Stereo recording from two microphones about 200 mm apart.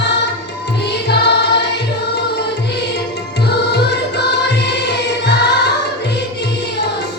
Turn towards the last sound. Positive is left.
turn(degrees=60)  # may be behind; listen again after turning